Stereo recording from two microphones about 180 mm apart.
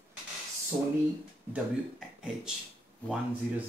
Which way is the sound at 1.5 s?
5° right (ahead or behind).